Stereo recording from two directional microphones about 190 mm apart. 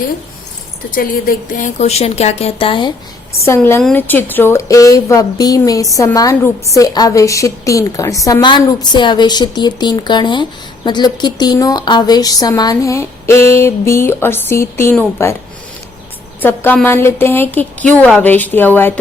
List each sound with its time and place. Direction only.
0.9 s speech: 45° left (ahead or behind); by 2.9 s 25° left (ahead or behind)
3.4 s a woman's voice: 15° left (ahead or behind)
16.4 s a woman's voice: 10° left (ahead or behind)